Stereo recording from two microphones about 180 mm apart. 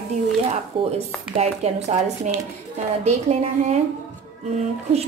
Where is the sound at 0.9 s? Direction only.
35° right (ahead or behind).